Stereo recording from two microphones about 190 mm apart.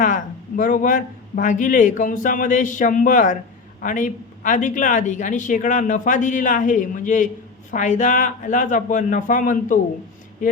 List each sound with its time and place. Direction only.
0.0 s speech: 45° left (ahead or behind)